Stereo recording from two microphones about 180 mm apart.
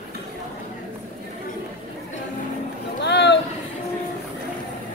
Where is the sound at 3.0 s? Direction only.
75° left (ahead or behind).